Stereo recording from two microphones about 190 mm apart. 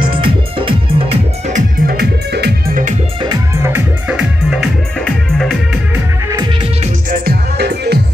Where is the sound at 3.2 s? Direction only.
15° right (ahead or behind).